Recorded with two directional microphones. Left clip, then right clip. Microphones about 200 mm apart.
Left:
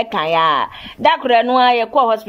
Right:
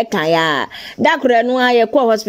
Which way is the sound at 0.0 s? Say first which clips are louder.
Even; 35° right (ahead or behind).